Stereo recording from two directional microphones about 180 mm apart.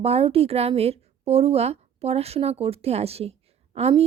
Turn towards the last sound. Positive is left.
turn(degrees=-35)  # may be behind; listen again after turning